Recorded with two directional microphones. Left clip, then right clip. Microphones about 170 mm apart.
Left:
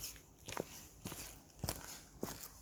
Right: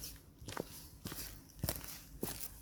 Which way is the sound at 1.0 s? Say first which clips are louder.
Right 2 dB; 30° right (ahead or behind).